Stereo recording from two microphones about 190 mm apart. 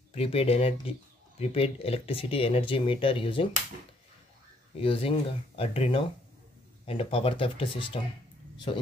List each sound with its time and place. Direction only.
0.1 s speech: 30° left (ahead or behind)
4.7 s speech: 30° left (ahead or behind)